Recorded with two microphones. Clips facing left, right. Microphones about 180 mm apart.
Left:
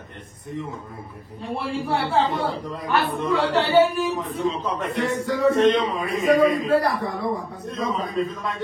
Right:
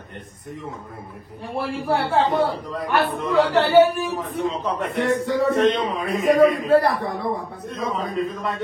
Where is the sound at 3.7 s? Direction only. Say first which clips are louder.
Right 3 dB; 20° right (ahead or behind).